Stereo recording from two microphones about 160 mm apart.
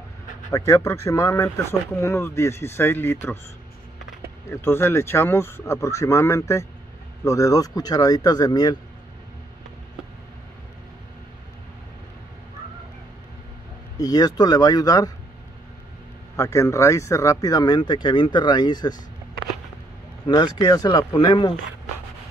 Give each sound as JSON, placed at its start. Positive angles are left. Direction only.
{"t": 0.5, "sound": "speech", "side_deg": 20}
{"t": 4.5, "sound": "speech", "side_deg": 15}
{"t": 13.9, "sound": "speech", "side_deg": 25}
{"t": 16.3, "sound": "speech", "side_deg": 15}
{"t": 20.2, "sound": "speech", "side_deg": 25}